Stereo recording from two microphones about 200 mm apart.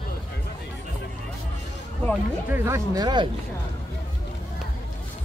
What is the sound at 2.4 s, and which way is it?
Speech, 10° right (ahead or behind).